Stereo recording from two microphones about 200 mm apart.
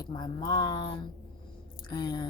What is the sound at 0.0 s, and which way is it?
A woman's voice, 20° left (ahead or behind).